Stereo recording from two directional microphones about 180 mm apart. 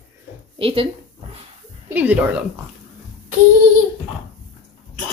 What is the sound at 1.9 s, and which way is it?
Speech, 10° right (ahead or behind).